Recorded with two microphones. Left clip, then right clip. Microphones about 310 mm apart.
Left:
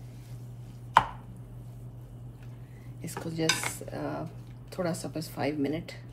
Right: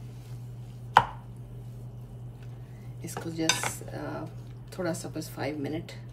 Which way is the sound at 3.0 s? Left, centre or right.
Centre.